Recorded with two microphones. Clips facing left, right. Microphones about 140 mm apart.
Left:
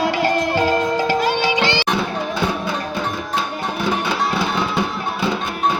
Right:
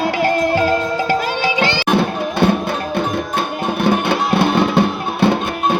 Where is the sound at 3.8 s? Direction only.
60° right (ahead or behind).